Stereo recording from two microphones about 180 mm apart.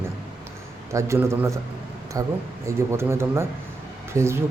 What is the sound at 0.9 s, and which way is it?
Speech, 15° right (ahead or behind).